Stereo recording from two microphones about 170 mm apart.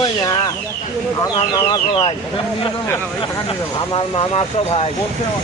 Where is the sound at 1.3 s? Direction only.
30° left (ahead or behind).